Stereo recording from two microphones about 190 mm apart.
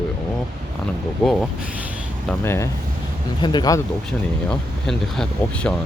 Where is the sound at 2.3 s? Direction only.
15° left (ahead or behind).